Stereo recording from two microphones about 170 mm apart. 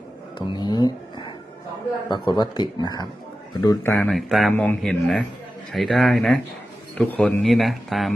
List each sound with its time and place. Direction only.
0.3 s speech: 25° left (ahead or behind)
3.9 s speech: 5° left (ahead or behind)